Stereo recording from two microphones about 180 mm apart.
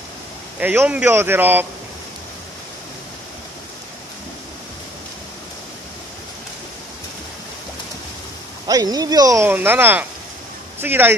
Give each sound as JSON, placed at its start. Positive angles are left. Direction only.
{"t": 0.6, "sound": "speech", "side_deg": -10}
{"t": 8.6, "sound": "speech", "side_deg": -20}